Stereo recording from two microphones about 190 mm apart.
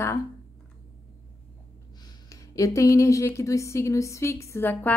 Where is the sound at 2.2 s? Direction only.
15° left (ahead or behind).